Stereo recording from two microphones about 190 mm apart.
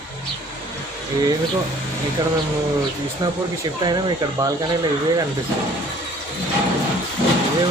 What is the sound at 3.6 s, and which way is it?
Speech, 20° right (ahead or behind).